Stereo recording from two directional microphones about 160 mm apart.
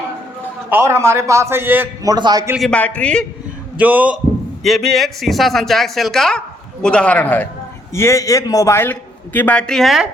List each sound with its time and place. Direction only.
0.7 s a man's voice: 15° right (ahead or behind)
2.1 s a man's voice: 25° right (ahead or behind)
2.6 s a man's voice: 5° left (ahead or behind)
3.8 s a man's voice: 10° right (ahead or behind)